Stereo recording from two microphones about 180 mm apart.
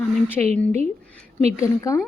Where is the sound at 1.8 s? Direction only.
15° left (ahead or behind).